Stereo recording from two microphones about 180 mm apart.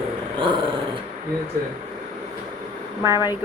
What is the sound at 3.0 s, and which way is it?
Speech, 15° right (ahead or behind).